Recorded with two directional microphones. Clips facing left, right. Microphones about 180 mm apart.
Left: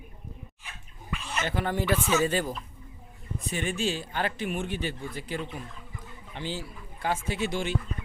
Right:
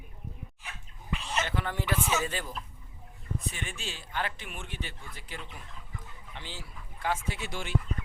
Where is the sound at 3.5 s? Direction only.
40° left (ahead or behind).